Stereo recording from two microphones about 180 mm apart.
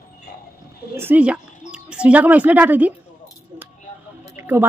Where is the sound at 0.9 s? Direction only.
10° right (ahead or behind).